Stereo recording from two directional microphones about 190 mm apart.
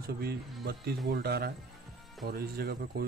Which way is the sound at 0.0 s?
55° right (ahead or behind).